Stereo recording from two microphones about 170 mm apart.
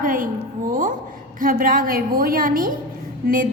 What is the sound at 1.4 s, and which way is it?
A woman's voice, 55° right (ahead or behind).